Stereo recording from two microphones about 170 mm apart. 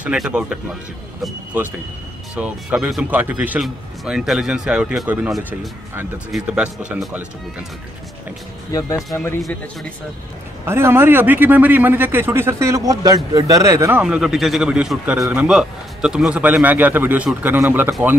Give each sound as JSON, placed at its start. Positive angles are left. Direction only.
{"t": 0.0, "sound": "a man's voice", "side_deg": -5}
{"t": 8.7, "sound": "speech", "side_deg": 20}
{"t": 10.6, "sound": "a man's voice", "side_deg": -15}
{"t": 14.0, "sound": "a man's voice", "side_deg": -5}